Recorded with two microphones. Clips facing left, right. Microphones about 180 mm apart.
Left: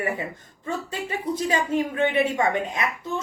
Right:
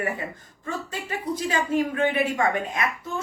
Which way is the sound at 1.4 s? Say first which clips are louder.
Right 1 dB; 25° left (ahead or behind).